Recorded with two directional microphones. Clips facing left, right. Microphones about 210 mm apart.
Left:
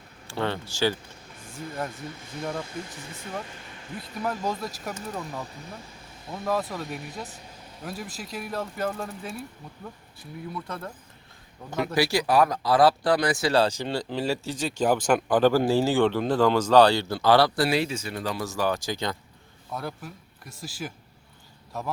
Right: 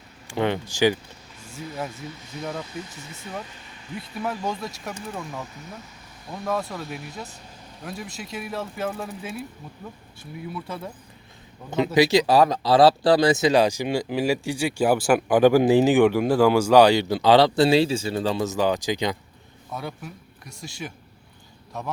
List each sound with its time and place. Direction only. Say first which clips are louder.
0.3 s speech: right 5 dB; 15° right (ahead or behind)
2.4 s speech: even; centre (ahead or behind)
3.9 s speech: right 1 dB; centre (ahead or behind)
11.9 s speech: right 5 dB; 20° right (ahead or behind)
19.7 s speech: right 1 dB; centre (ahead or behind)